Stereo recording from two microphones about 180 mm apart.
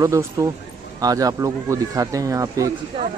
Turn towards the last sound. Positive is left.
turn(degrees=-30)  # may be behind; listen again after turning